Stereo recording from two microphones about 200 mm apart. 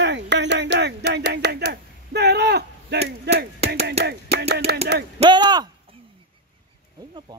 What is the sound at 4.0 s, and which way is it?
Music, 55° right (ahead or behind).